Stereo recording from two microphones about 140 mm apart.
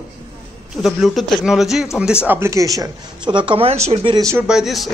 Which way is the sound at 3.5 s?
40° right (ahead or behind).